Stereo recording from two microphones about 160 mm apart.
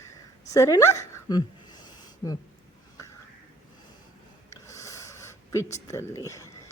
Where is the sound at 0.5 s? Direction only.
20° left (ahead or behind).